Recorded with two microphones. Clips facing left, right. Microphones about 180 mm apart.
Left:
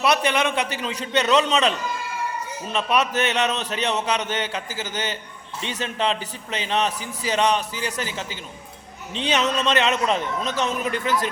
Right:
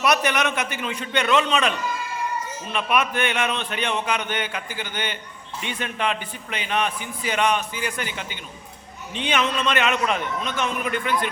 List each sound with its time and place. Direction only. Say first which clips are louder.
0.0 s a man's voice: left 1 dB; 30° left (ahead or behind)
2.7 s a man's voice: left 1 dB; 35° left (ahead or behind)